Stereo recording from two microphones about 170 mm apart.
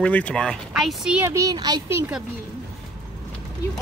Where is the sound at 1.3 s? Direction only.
20° right (ahead or behind).